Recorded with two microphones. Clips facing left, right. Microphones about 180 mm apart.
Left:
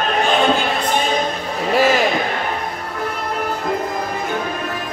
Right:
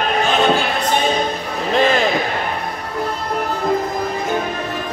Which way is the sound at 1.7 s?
5° left (ahead or behind).